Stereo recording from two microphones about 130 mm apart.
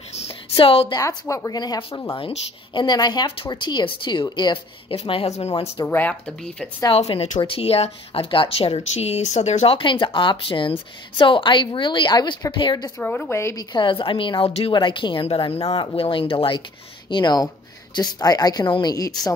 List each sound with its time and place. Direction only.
0.2 s a sound: 45° left (ahead or behind)
0.9 s speech: 25° left (ahead or behind)
2.1 s a woman's voice: 40° left (ahead or behind)
4.9 s speech: 50° left (ahead or behind)
5.9 s speech: 15° left (ahead or behind)
6.9 s speech: 50° left (ahead or behind)
9.8 s a woman's voice: 40° left (ahead or behind)
13.0 s speech: 15° left (ahead or behind)
13.7 s a woman's voice: 40° left (ahead or behind)
15.2 s speech: 50° left (ahead or behind)
15.8 s a woman's voice: 40° left (ahead or behind)